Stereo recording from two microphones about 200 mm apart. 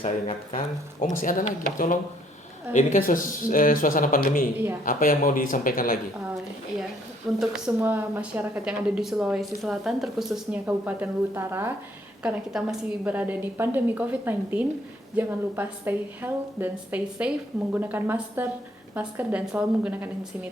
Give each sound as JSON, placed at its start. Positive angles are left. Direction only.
{"t": 0.0, "sound": "speech", "side_deg": 40}
{"t": 2.7, "sound": "speech", "side_deg": 40}
{"t": 7.3, "sound": "a woman's voice", "side_deg": -5}